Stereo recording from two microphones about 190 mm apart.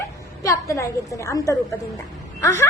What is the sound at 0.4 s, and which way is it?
A woman's voice, 15° left (ahead or behind).